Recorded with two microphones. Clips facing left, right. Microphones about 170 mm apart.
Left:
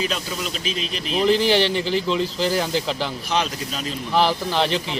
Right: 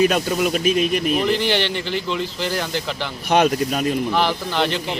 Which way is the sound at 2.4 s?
Centre (ahead or behind).